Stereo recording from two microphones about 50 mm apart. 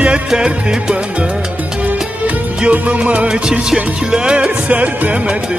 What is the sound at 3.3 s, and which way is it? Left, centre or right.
Music, centre.